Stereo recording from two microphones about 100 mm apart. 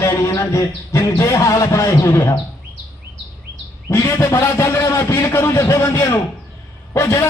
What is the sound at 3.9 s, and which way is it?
Speech, 30° left (ahead or behind).